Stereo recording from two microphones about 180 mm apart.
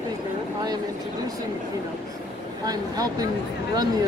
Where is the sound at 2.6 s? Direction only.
20° right (ahead or behind).